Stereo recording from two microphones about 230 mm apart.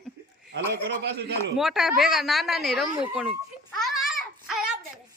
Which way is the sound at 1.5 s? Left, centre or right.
Centre.